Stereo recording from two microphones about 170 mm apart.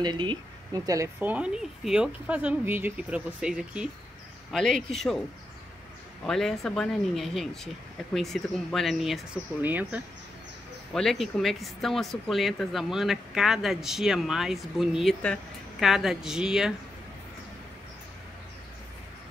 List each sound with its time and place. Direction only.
0.0 s a woman's voice: 25° right (ahead or behind); by 5.2 s centre (ahead or behind)
6.2 s a woman's voice: centre (ahead or behind)
10.9 s a woman's voice: centre (ahead or behind)